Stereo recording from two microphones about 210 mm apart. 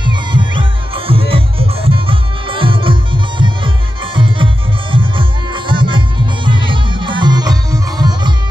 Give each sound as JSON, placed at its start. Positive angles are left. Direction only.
{"t": 0.0, "sound": "music", "side_deg": -20}